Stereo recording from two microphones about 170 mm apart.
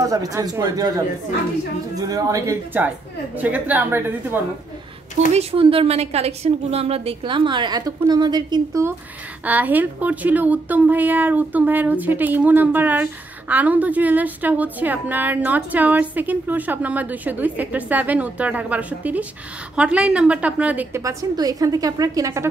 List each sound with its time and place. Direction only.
0.0 s a woman's voice: 20° right (ahead or behind)
5.3 s a woman's voice: 35° right (ahead or behind)
9.4 s a woman's voice: 10° right (ahead or behind)